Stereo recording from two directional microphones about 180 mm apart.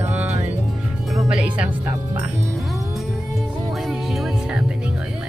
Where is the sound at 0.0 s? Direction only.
10° right (ahead or behind).